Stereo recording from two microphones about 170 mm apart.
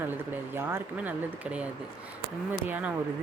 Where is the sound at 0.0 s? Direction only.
15° right (ahead or behind).